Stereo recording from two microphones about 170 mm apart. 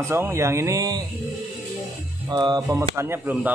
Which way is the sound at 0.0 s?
15° right (ahead or behind).